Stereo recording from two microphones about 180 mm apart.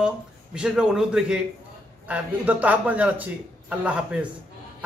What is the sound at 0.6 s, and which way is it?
A man's voice, 5° right (ahead or behind).